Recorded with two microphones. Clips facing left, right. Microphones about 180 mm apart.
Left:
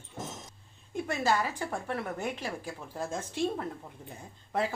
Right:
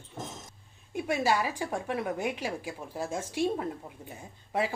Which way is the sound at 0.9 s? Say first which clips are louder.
Right 1 dB; 10° right (ahead or behind).